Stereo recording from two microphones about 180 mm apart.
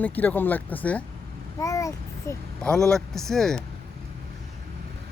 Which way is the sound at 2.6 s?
5° left (ahead or behind).